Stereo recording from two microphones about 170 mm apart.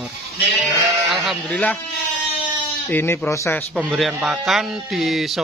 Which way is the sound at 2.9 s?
10° left (ahead or behind).